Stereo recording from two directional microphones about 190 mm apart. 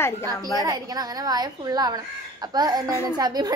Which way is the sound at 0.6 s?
20° right (ahead or behind).